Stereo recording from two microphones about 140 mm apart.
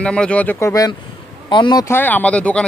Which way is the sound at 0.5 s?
25° left (ahead or behind).